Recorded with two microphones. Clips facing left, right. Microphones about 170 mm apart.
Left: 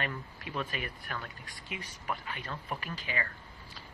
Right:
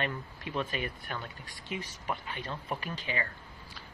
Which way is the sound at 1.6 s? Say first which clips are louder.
Right 2 dB; centre (ahead or behind).